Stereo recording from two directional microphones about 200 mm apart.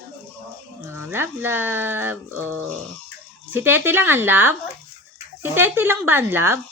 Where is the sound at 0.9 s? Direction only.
10° right (ahead or behind).